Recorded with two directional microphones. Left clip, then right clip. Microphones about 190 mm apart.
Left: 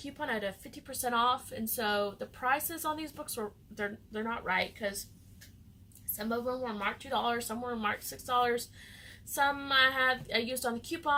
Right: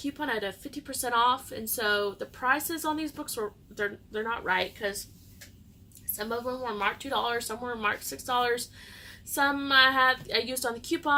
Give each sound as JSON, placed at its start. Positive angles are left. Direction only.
{"t": 0.0, "sound": "a woman's voice", "side_deg": -15}
{"t": 6.1, "sound": "a woman's voice", "side_deg": -15}